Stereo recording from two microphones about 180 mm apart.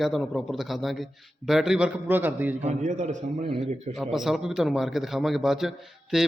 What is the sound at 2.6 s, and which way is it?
Speech, 40° right (ahead or behind).